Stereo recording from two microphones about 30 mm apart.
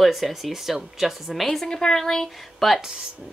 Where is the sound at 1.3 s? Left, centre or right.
Centre.